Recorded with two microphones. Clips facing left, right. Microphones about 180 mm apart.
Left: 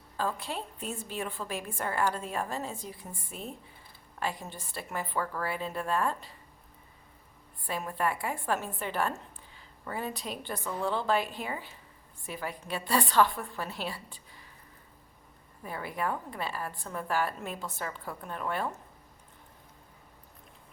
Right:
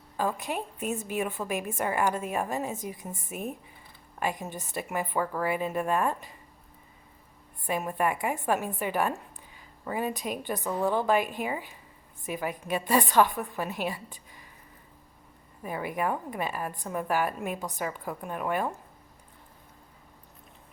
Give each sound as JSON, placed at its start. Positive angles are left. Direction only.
{"t": 0.2, "sound": "a woman's voice", "side_deg": -15}
{"t": 7.7, "sound": "a woman's voice", "side_deg": -15}
{"t": 15.6, "sound": "a woman's voice", "side_deg": -15}